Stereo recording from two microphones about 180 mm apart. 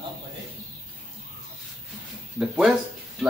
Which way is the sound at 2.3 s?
5° right (ahead or behind).